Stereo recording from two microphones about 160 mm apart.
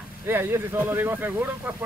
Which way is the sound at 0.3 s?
15° right (ahead or behind).